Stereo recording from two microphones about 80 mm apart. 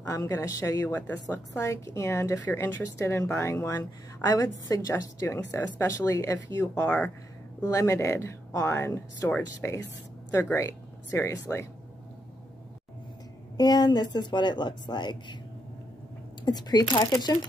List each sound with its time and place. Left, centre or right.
0.0 s a woman's voice: left
0.9 s speech: centre
1.3 s a woman's voice: left
4.3 s a woman's voice: left
10.3 s a woman's voice: left
11.1 s speech: left
13.6 s speech: left
16.4 s speech: left